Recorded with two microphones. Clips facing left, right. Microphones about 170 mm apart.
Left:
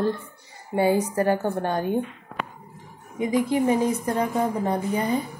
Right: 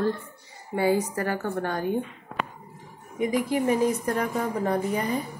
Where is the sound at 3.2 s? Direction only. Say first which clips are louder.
Left 2 dB; 25° left (ahead or behind).